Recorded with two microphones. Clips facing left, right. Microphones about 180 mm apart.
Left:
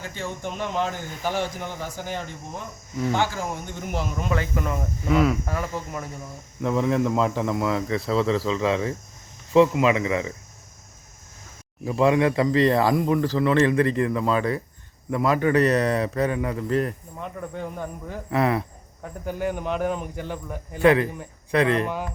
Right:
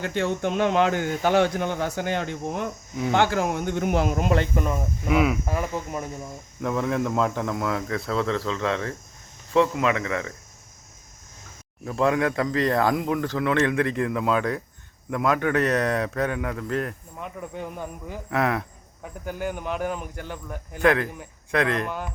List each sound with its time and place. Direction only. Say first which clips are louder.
0.0 s speech: right 7 dB; 65° right (ahead or behind)
4.5 s speech: right 2 dB; 20° right (ahead or behind)
4.8 s a man's voice: left 2 dB; 5° right (ahead or behind)
5.5 s speech: right 1 dB; 15° right (ahead or behind)
6.6 s a man's voice: left 3 dB; centre (ahead or behind)
11.9 s a man's voice: left 3 dB; centre (ahead or behind)
18.3 s a man's voice: left 2 dB; centre (ahead or behind)